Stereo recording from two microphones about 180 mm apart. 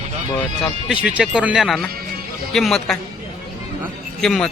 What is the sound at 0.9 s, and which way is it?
A man's voice, 5° right (ahead or behind).